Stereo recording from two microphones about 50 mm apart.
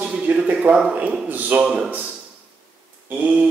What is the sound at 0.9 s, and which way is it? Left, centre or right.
Speech, right.